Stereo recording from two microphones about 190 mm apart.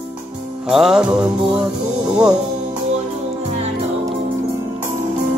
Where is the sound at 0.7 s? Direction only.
Centre (ahead or behind).